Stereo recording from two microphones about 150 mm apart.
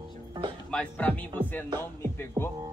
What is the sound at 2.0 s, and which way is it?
Music, 15° left (ahead or behind).